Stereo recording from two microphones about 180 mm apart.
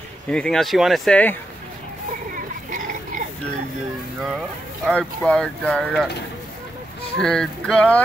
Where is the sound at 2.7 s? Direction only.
45° right (ahead or behind).